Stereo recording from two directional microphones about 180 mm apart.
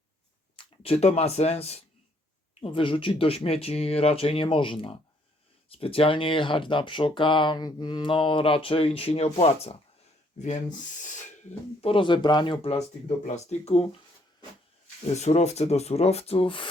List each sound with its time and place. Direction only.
0.5 s speech: 30° left (ahead or behind)
11.8 s speech: 30° left (ahead or behind)
15.1 s speech: 40° left (ahead or behind)